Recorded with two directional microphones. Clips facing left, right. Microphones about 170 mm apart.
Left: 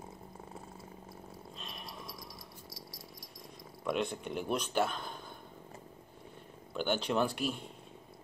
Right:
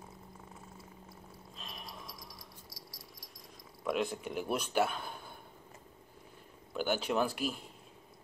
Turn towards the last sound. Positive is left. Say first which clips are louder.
# left 1 dB
turn(degrees=-5)  # may be behind; listen again after turning